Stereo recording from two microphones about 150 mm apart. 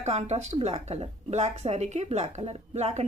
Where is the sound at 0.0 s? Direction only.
45° right (ahead or behind).